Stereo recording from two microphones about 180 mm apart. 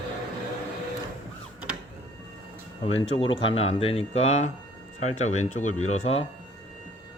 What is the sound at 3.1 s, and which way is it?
Speech, 30° left (ahead or behind).